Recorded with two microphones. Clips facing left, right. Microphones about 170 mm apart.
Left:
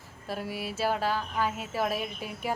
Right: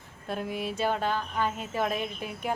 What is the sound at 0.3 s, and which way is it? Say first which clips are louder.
Speech: right 2 dB; 5° left (ahead or behind).